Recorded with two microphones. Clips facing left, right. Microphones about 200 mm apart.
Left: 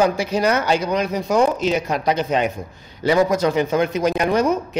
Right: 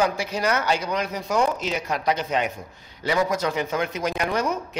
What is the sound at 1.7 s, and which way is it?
Speech, 25° left (ahead or behind).